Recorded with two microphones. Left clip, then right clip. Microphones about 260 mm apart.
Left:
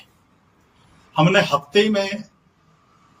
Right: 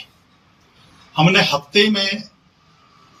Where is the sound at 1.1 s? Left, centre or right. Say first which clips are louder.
Right 1 dB; centre.